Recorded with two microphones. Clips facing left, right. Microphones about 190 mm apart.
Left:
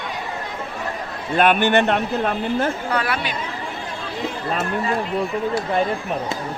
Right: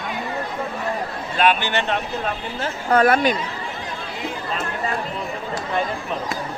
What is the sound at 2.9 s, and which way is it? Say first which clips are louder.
Speech: right 7 dB; 45° right (ahead or behind).